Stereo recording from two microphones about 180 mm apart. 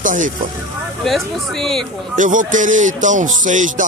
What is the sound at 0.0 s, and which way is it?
Speech, 45° right (ahead or behind).